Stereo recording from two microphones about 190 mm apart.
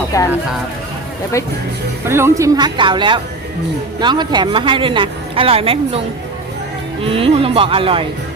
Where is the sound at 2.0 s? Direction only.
15° right (ahead or behind); by 6.0 s 30° right (ahead or behind).